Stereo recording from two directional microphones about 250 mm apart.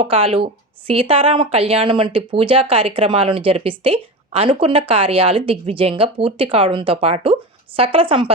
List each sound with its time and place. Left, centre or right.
0.0 s speech: right